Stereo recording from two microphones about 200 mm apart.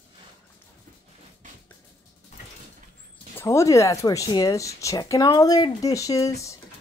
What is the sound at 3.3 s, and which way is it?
Speech, 15° left (ahead or behind).